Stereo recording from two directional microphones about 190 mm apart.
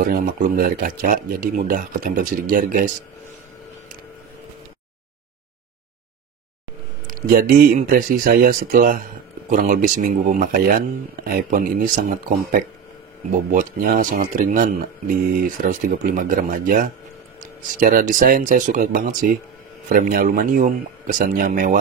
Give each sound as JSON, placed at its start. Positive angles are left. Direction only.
{"t": 0.0, "sound": "speech", "side_deg": -50}
{"t": 7.1, "sound": "speech", "side_deg": -45}